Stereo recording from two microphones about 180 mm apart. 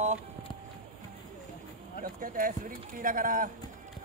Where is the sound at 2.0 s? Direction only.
50° right (ahead or behind).